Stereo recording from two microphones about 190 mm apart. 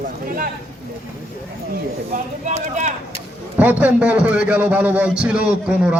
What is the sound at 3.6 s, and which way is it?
A man's voice, 10° right (ahead or behind).